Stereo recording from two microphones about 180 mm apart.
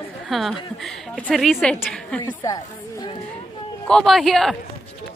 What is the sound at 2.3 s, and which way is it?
Speech, 20° left (ahead or behind).